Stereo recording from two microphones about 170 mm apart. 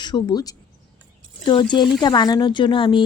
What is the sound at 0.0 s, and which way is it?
Speech, 25° left (ahead or behind).